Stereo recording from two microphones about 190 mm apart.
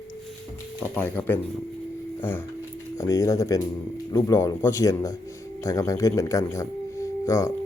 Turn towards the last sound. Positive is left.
turn(degrees=15)  # may be behind; listen again after turning